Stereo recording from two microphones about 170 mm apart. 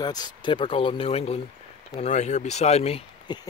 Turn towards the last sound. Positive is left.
turn(degrees=25)  # may be behind; listen again after turning